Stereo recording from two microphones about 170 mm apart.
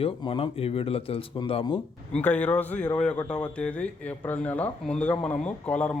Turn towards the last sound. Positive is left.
turn(degrees=5)  # may be behind; listen again after turning